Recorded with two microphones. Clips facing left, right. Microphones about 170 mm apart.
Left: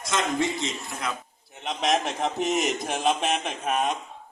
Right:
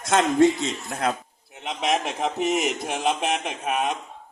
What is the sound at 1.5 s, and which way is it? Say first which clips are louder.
A man's voice: even; 5° right (ahead or behind).